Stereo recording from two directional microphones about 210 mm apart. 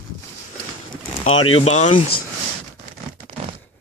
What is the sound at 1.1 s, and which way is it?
Pigeon, 25° left (ahead or behind).